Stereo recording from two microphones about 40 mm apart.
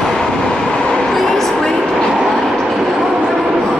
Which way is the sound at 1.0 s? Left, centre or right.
Centre.